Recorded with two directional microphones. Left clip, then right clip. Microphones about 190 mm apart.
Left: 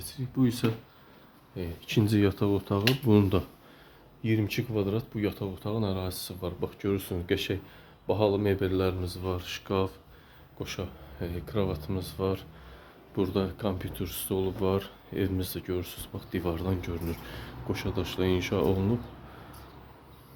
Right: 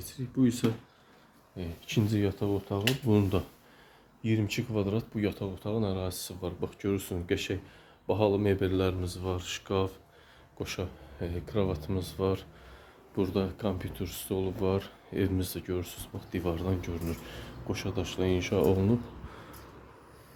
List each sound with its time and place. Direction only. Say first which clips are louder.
0.0 s speech: even; 15° left (ahead or behind)
10.6 s speech: right 1 dB; 20° right (ahead or behind)
11.2 s speech: even; 5° right (ahead or behind)
13.1 s speech: left 1 dB; centre (ahead or behind)